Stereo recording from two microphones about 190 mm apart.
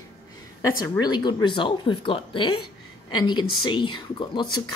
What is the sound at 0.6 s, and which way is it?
Speech, 15° left (ahead or behind).